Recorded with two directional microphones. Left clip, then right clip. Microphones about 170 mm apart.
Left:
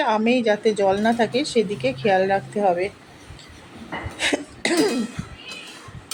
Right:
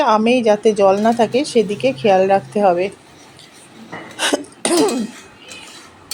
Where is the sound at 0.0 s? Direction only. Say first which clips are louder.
Right 6 dB; 35° right (ahead or behind).